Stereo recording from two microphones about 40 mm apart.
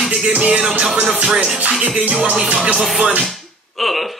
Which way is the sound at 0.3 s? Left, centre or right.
Right.